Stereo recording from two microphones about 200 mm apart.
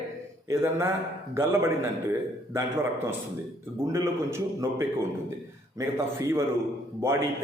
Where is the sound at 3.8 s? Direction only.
15° right (ahead or behind).